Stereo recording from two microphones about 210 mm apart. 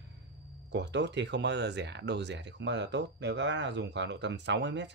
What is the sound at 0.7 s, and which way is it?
Speech, 55° right (ahead or behind).